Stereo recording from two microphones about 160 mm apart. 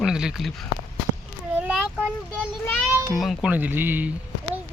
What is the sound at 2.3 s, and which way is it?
A child's voice, 10° left (ahead or behind).